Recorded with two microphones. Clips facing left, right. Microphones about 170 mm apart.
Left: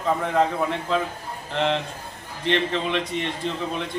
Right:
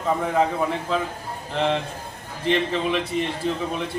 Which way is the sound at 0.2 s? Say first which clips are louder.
Even; 5° right (ahead or behind).